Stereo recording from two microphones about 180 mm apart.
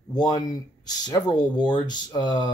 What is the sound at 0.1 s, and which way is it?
Speech, 20° left (ahead or behind).